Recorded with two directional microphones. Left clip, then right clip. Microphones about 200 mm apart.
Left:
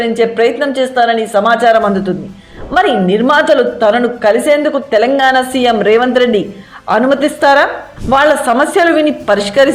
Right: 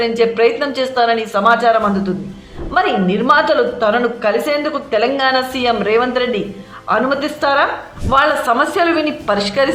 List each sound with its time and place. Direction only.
0.0 s a woman's voice: 20° left (ahead or behind)